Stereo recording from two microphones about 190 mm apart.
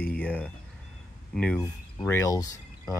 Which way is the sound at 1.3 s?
5° left (ahead or behind).